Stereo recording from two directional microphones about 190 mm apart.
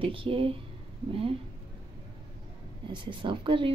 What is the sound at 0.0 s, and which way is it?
Speech, 30° right (ahead or behind).